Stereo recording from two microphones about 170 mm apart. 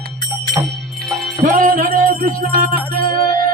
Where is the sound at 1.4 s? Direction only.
50° right (ahead or behind).